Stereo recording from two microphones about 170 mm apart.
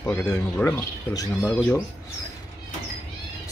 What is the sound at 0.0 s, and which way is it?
Speech, 10° left (ahead or behind).